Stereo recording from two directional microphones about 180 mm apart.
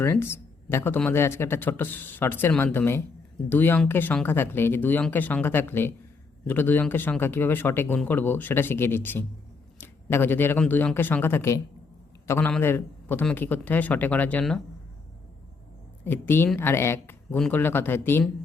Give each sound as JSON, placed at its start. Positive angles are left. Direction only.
{"t": 0.0, "sound": "speech", "side_deg": 15}
{"t": 16.0, "sound": "speech", "side_deg": 10}